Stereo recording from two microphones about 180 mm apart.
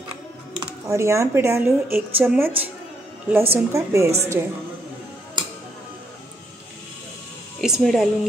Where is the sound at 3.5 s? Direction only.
15° right (ahead or behind).